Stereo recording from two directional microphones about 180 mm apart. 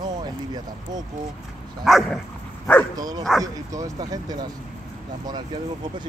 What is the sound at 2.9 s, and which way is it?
Speech, 20° right (ahead or behind).